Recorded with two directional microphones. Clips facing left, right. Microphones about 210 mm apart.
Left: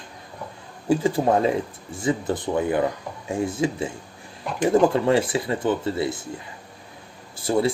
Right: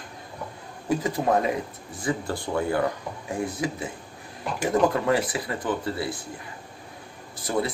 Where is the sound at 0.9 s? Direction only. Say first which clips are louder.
Left 4 dB; 30° left (ahead or behind).